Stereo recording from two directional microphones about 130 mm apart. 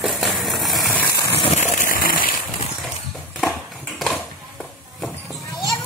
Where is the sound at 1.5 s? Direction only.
90° left.